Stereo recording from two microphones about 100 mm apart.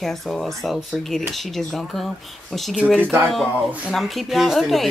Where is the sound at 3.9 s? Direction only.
Centre (ahead or behind).